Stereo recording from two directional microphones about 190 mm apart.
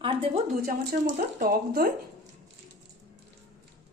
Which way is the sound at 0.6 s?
50° right (ahead or behind).